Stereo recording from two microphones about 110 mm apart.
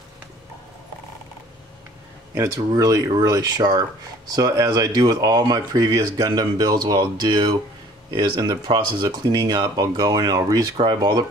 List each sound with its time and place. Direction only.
2.3 s speech: 30° right (ahead or behind)